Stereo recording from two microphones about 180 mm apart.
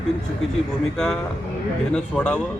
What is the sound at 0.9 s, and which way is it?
A man's voice, 5° left (ahead or behind).